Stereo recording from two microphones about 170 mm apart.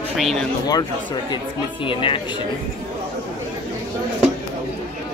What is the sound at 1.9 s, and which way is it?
Speech, 30° left (ahead or behind).